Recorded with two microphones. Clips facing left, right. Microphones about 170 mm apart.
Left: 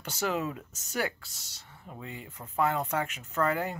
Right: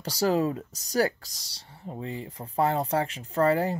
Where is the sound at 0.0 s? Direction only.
35° right (ahead or behind).